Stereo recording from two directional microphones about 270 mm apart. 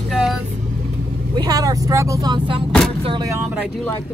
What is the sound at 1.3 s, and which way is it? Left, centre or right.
Speech, centre.